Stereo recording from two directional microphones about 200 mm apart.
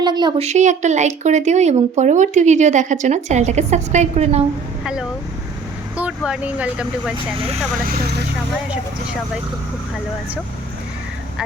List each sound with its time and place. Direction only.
0.0 s speech: 20° right (ahead or behind)
6.0 s speech: 5° right (ahead or behind)